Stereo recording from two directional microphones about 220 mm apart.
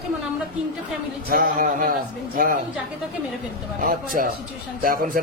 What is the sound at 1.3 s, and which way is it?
A man's voice, 40° right (ahead or behind).